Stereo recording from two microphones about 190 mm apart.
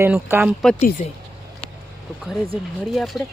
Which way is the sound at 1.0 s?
35° left (ahead or behind).